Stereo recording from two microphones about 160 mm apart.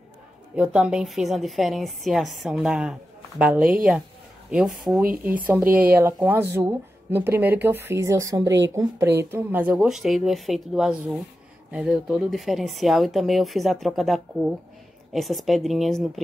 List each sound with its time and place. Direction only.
0.6 s a woman's voice: 5° right (ahead or behind)
5.7 s speech: 65° right (ahead or behind)
5.9 s a woman's voice: 15° right (ahead or behind)